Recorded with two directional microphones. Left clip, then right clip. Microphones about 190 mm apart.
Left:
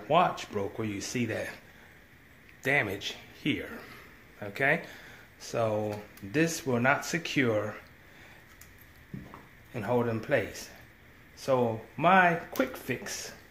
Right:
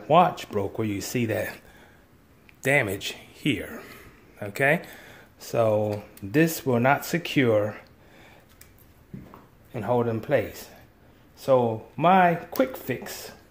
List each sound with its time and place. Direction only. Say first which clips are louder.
0.1 s speech: right 6 dB; 50° right (ahead or behind)
2.6 s a man's voice: right 5 dB; 50° right (ahead or behind)
9.7 s speech: right 4 dB; 40° right (ahead or behind)